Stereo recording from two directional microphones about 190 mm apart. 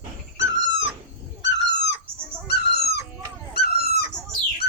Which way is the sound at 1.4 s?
65° left (ahead or behind).